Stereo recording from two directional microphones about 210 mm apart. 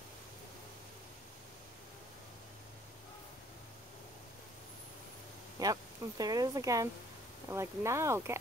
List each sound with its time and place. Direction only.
5.6 s speech: 15° right (ahead or behind)